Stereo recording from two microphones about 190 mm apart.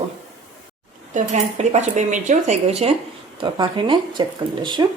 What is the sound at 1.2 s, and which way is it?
Speech, 40° right (ahead or behind).